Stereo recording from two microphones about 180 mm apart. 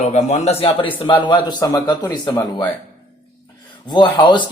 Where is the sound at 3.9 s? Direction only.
25° left (ahead or behind).